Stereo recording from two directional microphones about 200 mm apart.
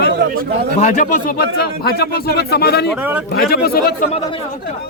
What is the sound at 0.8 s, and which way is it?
Speech, 40° left (ahead or behind).